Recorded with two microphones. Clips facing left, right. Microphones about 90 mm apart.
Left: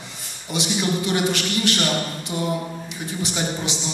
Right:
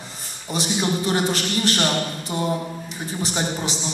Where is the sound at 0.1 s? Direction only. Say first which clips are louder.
Even; 40° right (ahead or behind).